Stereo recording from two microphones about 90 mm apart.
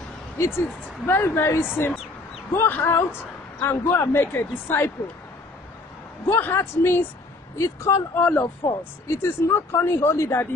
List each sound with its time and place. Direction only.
0.4 s speech: 25° left (ahead or behind)
6.2 s speech: 25° left (ahead or behind)
8.2 s speech: 15° left (ahead or behind)
9.0 s speech: 30° left (ahead or behind)